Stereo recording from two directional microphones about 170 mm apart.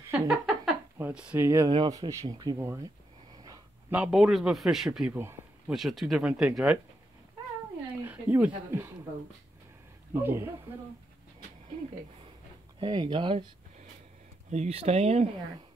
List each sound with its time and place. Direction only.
0.1 s a sound: 10° right (ahead or behind)
1.7 s a man's voice: 25° right (ahead or behind)
3.9 s speech: 5° right (ahead or behind)
8.0 s speech: 10° right (ahead or behind)
10.1 s a man's voice: 10° right (ahead or behind)
12.8 s speech: 25° right (ahead or behind)
14.5 s speech: 40° right (ahead or behind)